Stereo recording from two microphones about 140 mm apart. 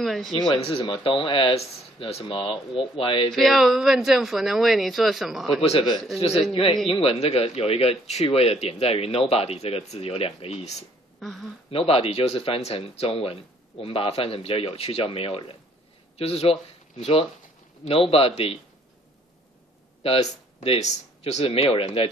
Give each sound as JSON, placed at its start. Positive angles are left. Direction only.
{"t": 0.0, "sound": "speech", "side_deg": 0}
{"t": 0.4, "sound": "speech", "side_deg": 35}
{"t": 3.3, "sound": "speech", "side_deg": 0}
{"t": 5.6, "sound": "speech", "side_deg": 40}
{"t": 5.9, "sound": "speech", "side_deg": 0}
{"t": 6.5, "sound": "speech", "side_deg": 40}
{"t": 11.1, "sound": "speech", "side_deg": 0}
{"t": 11.7, "sound": "speech", "side_deg": 45}
{"t": 20.0, "sound": "speech", "side_deg": 45}